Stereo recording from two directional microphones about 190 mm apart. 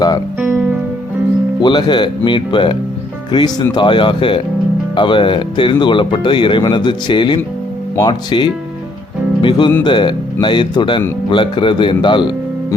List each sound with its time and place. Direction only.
0.3 s music: 10° right (ahead or behind)
1.6 s speech: 25° left (ahead or behind)